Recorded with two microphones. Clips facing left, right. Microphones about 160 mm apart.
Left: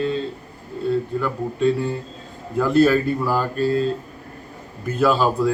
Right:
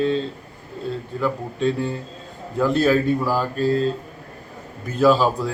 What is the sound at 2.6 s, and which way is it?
Speech, centre (ahead or behind).